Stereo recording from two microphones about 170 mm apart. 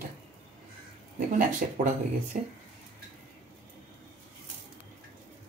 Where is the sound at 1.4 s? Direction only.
50° right (ahead or behind).